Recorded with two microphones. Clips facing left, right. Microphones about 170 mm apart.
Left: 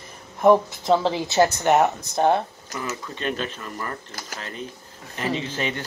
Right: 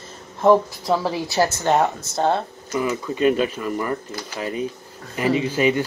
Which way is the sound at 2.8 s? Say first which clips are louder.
Right 9 dB; 10° right (ahead or behind).